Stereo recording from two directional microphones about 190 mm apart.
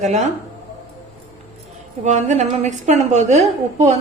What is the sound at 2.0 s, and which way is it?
A woman's voice, 40° right (ahead or behind).